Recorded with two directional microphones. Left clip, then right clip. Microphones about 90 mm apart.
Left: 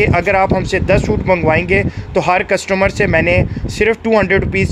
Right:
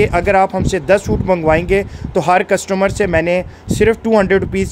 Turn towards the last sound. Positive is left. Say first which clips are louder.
# even
turn(degrees=-45)  # may be behind; listen again after turning